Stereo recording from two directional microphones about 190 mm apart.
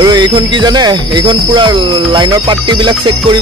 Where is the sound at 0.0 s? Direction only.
20° right (ahead or behind).